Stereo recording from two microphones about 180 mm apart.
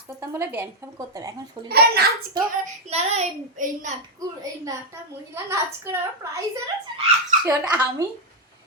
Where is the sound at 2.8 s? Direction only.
35° right (ahead or behind).